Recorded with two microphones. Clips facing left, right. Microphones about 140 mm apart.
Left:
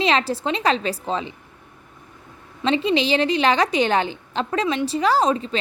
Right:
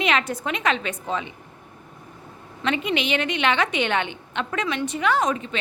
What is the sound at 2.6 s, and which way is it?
A woman's voice, 30° left (ahead or behind).